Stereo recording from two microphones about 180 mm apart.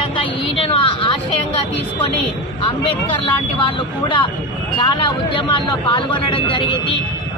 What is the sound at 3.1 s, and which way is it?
Speech, 30° left (ahead or behind).